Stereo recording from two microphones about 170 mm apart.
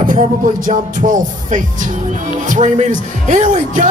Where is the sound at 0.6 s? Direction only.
50° right (ahead or behind).